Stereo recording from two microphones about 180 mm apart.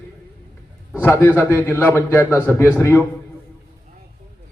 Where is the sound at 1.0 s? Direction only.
10° left (ahead or behind).